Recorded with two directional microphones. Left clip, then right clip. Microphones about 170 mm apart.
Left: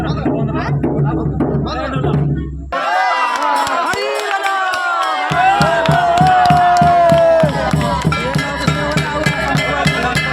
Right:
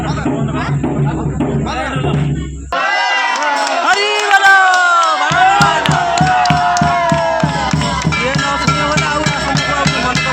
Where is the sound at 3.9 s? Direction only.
30° right (ahead or behind).